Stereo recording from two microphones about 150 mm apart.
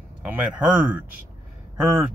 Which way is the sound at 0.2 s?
10° right (ahead or behind).